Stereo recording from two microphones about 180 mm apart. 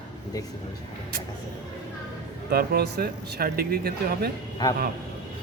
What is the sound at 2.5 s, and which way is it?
Speech, 60° right (ahead or behind).